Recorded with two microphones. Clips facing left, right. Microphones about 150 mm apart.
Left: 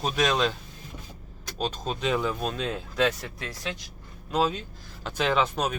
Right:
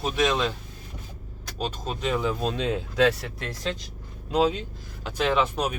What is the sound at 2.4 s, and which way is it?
Speech, 30° right (ahead or behind).